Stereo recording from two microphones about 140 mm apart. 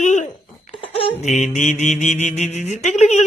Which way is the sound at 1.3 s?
55° left (ahead or behind).